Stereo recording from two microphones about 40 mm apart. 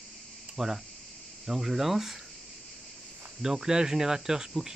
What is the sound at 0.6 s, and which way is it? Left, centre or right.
Speech, centre.